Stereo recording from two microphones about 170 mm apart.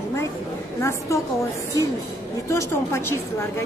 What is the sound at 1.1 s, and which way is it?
Speech, 20° left (ahead or behind).